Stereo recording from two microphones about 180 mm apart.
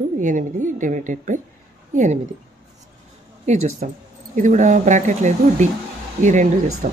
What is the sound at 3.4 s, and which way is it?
A woman's voice, 40° right (ahead or behind).